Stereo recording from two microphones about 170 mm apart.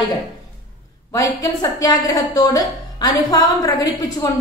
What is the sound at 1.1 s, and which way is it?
A woman's voice, 20° left (ahead or behind).